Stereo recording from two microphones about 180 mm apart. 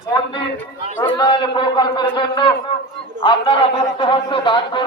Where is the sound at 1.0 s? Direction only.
25° left (ahead or behind).